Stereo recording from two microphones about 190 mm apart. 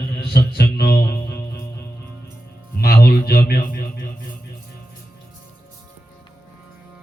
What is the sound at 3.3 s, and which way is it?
Speech, 55° left (ahead or behind).